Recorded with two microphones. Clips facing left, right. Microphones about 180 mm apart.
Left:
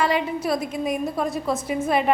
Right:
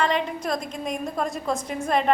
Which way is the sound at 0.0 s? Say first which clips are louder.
Left 2 dB; 5° left (ahead or behind).